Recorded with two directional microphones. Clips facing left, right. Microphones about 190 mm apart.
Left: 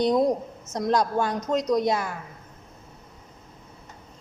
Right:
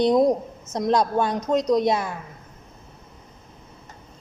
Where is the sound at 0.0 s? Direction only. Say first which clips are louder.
Right 3 dB; 20° right (ahead or behind).